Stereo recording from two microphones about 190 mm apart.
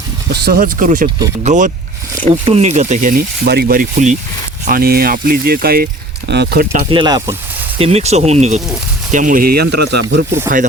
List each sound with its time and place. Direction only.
0.4 s speech: 50° right (ahead or behind)
2.2 s speech: 25° right (ahead or behind)
2.6 s speech: 35° right (ahead or behind)
4.6 s speech: 50° right (ahead or behind)
6.9 s speech: 20° right (ahead or behind)
7.8 s speech: 35° right (ahead or behind); by 10.2 s 70° right (ahead or behind)